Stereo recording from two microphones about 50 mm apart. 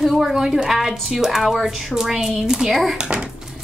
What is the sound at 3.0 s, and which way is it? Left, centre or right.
Speech, centre.